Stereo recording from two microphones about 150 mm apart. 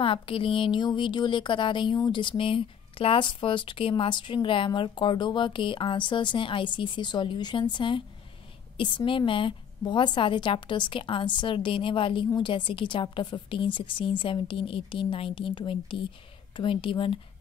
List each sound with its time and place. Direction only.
0.0 s speech: 35° left (ahead or behind)